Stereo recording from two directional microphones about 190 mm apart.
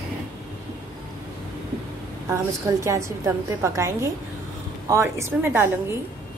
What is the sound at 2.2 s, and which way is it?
A woman's voice, 15° right (ahead or behind).